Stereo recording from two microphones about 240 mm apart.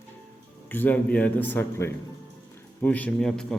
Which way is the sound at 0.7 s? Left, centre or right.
Centre.